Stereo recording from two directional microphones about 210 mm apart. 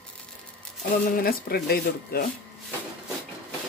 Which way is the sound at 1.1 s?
45° left (ahead or behind).